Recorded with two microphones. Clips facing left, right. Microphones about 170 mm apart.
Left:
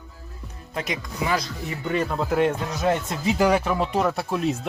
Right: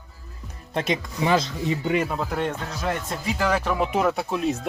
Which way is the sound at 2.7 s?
20° left (ahead or behind).